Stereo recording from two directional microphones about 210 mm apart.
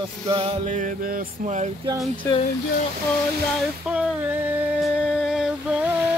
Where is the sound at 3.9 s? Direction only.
5° right (ahead or behind).